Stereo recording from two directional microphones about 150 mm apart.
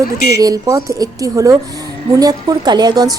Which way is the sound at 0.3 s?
25° right (ahead or behind).